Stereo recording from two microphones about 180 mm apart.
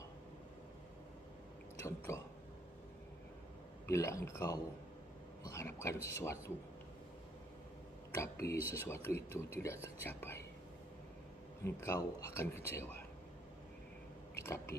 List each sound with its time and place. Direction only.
1.9 s speech: 15° left (ahead or behind)
3.8 s speech: 15° left (ahead or behind)
8.1 s speech: 15° left (ahead or behind)
11.6 s speech: 15° left (ahead or behind)
14.3 s a sound: 15° left (ahead or behind)